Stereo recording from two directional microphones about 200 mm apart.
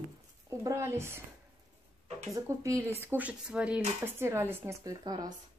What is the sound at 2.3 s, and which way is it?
A woman's voice, 15° right (ahead or behind).